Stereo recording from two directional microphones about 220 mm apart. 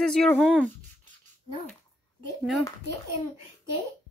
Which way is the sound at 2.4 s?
Centre (ahead or behind).